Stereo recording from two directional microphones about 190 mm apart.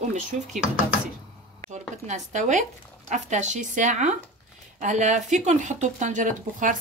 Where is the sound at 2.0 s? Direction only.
40° right (ahead or behind).